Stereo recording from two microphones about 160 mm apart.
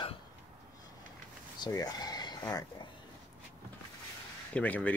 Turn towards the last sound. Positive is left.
turn(degrees=10)  # may be behind; listen again after turning